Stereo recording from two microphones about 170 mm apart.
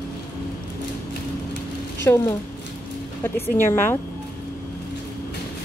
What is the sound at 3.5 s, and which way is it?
Speech, 15° left (ahead or behind).